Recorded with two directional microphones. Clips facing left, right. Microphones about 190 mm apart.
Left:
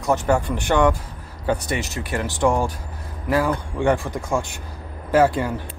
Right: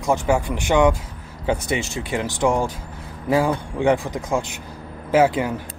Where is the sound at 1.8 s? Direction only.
25° right (ahead or behind).